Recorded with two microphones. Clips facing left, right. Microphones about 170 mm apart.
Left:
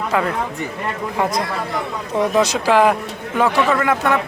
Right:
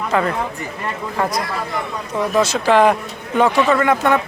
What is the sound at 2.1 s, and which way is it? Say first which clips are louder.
Speech: left 1 dB; 15° left (ahead or behind).